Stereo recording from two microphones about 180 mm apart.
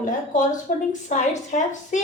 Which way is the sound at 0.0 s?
45° left (ahead or behind).